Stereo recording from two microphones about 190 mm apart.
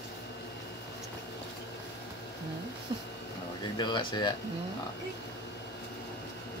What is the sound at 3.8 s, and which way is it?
Speech, 25° left (ahead or behind).